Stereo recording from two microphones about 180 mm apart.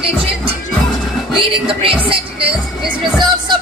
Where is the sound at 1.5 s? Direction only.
30° right (ahead or behind).